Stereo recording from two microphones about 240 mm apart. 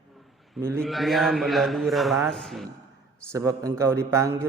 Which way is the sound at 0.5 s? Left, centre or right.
Centre.